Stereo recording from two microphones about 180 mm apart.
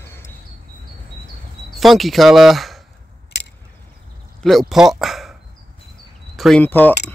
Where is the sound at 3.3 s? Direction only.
70° left (ahead or behind).